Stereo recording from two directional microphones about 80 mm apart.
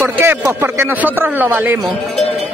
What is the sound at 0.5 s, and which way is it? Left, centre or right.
Speech, right.